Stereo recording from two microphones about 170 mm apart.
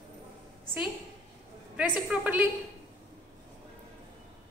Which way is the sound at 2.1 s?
10° right (ahead or behind).